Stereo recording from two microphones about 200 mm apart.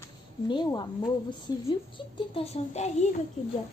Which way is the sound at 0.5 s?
20° left (ahead or behind).